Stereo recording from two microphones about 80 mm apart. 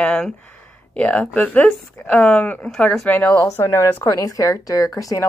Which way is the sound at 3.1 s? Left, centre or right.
Left.